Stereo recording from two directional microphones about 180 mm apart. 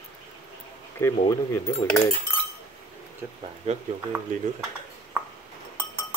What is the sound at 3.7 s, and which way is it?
Speech, 40° right (ahead or behind).